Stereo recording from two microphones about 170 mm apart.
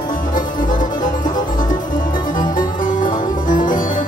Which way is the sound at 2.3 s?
55° left (ahead or behind).